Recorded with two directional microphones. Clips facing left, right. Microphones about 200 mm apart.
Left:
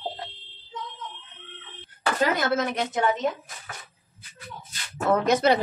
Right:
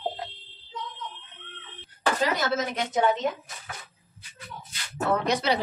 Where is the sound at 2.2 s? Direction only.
55° left (ahead or behind).